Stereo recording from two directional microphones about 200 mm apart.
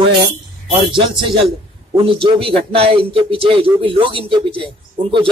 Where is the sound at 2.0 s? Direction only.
25° right (ahead or behind).